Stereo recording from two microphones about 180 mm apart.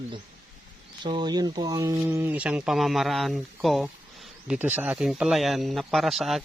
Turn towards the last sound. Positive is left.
turn(degrees=0)  # may be behind; listen again after turning